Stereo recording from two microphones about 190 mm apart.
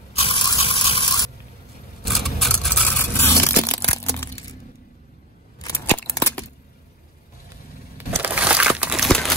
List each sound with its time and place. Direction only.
0.1 s fill: 30° left (ahead or behind)
2.0 s scrape: centre (ahead or behind)
5.6 s scissors: 15° left (ahead or behind)
8.2 s a sound: 10° right (ahead or behind)